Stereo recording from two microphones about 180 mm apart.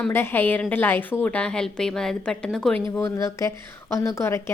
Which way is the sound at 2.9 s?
15° left (ahead or behind).